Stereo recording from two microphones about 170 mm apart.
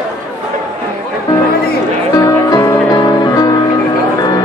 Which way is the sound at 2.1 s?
20° left (ahead or behind).